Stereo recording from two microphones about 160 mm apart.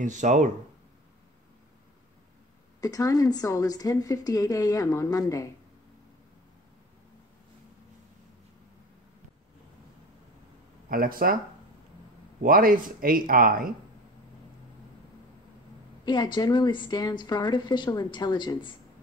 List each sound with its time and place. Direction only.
0.0 s speech: 50° right (ahead or behind)
2.8 s a woman's voice: 20° left (ahead or behind)
10.9 s speech: 65° right (ahead or behind)
12.4 s speech: 65° right (ahead or behind)
16.1 s a woman's voice: 30° left (ahead or behind)